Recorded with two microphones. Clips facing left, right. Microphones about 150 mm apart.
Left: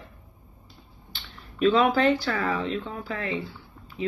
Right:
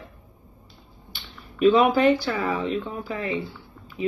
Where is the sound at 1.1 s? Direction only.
15° right (ahead or behind).